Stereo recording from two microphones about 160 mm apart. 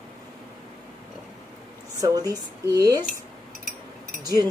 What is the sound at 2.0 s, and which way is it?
Speech, 25° right (ahead or behind).